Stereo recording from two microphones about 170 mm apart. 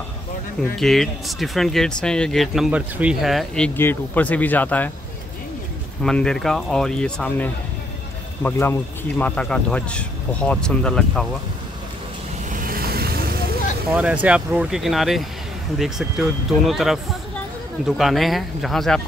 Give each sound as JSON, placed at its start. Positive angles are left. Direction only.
{"t": 0.7, "sound": "speech", "side_deg": 0}
{"t": 6.0, "sound": "speech", "side_deg": 5}
{"t": 12.4, "sound": "vehicle", "side_deg": -55}
{"t": 13.9, "sound": "speech", "side_deg": -5}